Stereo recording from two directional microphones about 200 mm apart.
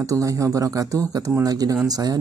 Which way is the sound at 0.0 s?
15° right (ahead or behind).